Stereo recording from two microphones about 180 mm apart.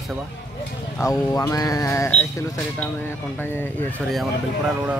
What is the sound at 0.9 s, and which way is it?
Speech, 20° left (ahead or behind).